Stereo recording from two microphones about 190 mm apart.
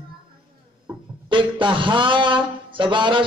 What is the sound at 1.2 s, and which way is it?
A man's voice, 25° right (ahead or behind).